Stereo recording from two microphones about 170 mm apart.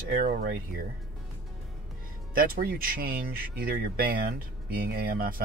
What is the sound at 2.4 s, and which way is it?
Speech, 60° right (ahead or behind).